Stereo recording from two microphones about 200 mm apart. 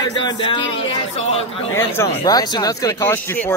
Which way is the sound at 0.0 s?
20° left (ahead or behind).